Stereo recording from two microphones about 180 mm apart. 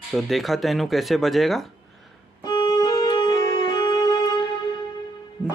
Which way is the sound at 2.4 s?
25° left (ahead or behind).